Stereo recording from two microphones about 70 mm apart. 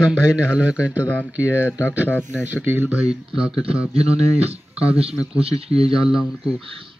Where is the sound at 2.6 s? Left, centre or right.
Right.